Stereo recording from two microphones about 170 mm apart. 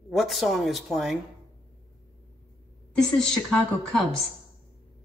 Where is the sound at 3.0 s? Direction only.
5° left (ahead or behind).